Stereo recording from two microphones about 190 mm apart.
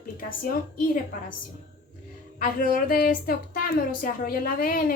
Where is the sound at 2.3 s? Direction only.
45° left (ahead or behind).